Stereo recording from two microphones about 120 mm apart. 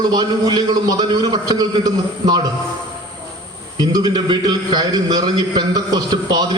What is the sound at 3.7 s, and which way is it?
A man's voice, 35° right (ahead or behind).